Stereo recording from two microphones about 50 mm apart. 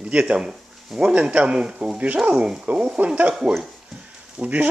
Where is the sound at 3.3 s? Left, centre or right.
Centre.